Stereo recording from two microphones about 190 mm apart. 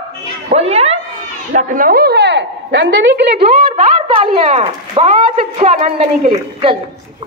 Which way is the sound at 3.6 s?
45° right (ahead or behind).